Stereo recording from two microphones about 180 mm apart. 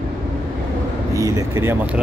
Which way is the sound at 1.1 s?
20° right (ahead or behind).